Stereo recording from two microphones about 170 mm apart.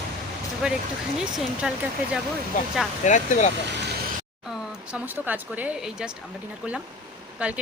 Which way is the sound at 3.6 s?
90° right.